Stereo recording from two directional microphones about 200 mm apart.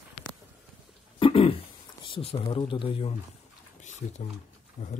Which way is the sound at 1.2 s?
25° left (ahead or behind).